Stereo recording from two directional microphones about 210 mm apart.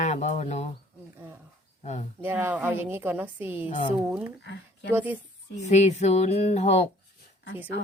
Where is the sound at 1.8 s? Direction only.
30° left (ahead or behind).